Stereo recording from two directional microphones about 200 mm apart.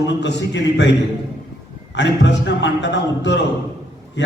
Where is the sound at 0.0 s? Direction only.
60° left (ahead or behind).